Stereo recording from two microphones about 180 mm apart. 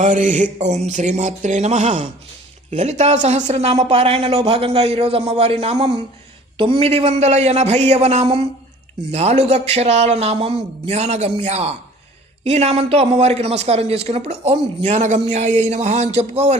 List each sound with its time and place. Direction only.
0.0 s mantra: 45° right (ahead or behind)
0.9 s speech: 40° right (ahead or behind)